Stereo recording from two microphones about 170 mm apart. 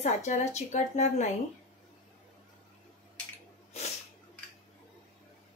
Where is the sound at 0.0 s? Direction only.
45° left (ahead or behind).